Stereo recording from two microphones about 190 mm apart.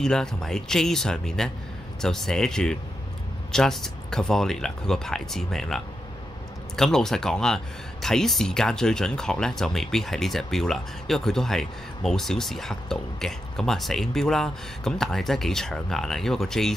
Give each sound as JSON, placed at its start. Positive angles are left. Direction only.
{"t": 0.0, "sound": "speech", "side_deg": 5}
{"t": 6.8, "sound": "speech", "side_deg": 0}